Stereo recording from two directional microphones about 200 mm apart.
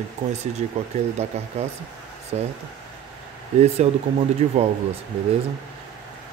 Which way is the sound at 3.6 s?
30° right (ahead or behind).